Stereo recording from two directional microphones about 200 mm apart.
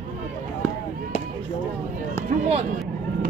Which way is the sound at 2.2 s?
30° right (ahead or behind).